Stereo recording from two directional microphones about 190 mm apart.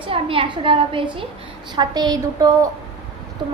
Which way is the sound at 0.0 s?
30° right (ahead or behind).